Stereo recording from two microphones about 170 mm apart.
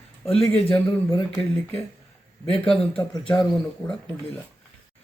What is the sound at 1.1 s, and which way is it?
Speech, 15° left (ahead or behind).